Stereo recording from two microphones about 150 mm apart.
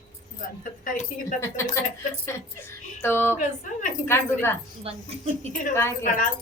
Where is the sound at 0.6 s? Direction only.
60° left (ahead or behind).